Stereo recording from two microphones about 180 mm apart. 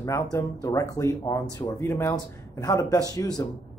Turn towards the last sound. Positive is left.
turn(degrees=20)  # may be behind; listen again after turning